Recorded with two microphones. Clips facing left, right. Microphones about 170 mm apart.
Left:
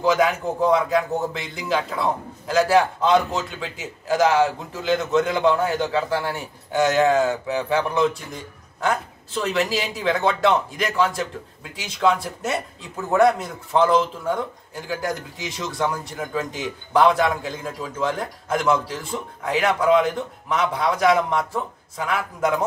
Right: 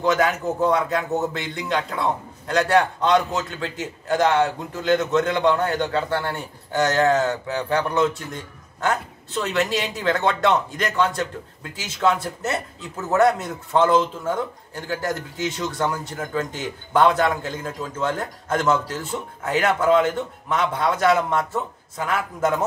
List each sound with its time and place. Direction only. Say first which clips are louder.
0.0 s a man's voice: left 1 dB; centre (ahead or behind)